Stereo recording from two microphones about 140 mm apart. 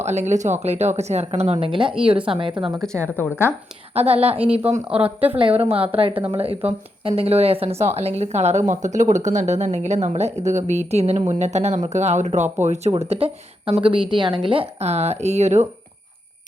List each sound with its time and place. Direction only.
0.0 s a woman's voice: 55° right (ahead or behind); by 2.7 s 40° right (ahead or behind)
2.8 s a woman's voice: 5° left (ahead or behind)
3.9 s speech: 45° right (ahead or behind)
4.9 s speech: 10° right (ahead or behind)
5.4 s speech: 40° right (ahead or behind)